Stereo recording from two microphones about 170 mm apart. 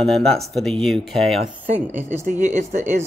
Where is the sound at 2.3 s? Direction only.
45° right (ahead or behind).